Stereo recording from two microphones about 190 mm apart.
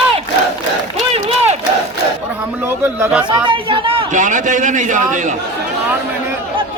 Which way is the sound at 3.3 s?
25° right (ahead or behind).